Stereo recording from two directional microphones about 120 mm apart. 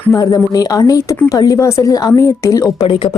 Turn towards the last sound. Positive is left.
turn(degrees=45)  # may be behind; listen again after turning